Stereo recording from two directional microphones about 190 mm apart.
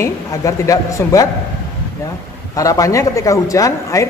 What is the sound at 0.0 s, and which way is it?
Speech, 15° left (ahead or behind).